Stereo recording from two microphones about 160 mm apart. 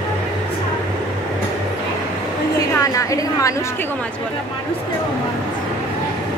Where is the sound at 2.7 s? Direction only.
20° left (ahead or behind).